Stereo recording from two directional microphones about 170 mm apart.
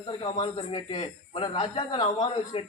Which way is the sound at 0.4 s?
30° left (ahead or behind).